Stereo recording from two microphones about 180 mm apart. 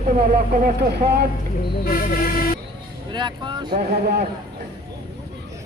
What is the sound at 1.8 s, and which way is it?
Speech, 55° left (ahead or behind).